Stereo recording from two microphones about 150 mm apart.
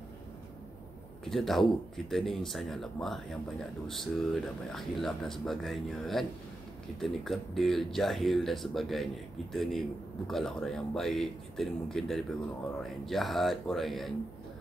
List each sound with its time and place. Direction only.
1.2 s speech: centre (ahead or behind)